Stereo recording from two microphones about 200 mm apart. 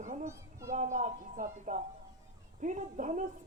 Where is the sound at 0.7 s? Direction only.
40° right (ahead or behind).